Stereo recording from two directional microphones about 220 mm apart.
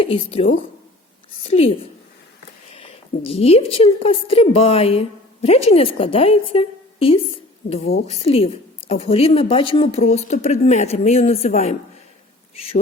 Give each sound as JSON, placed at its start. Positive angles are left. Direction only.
{"t": 0.0, "sound": "a woman's voice", "side_deg": 25}
{"t": 3.2, "sound": "a woman's voice", "side_deg": 25}